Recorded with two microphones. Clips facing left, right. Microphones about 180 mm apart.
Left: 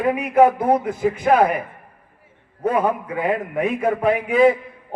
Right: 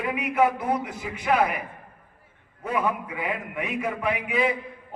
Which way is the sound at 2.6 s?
45° left (ahead or behind).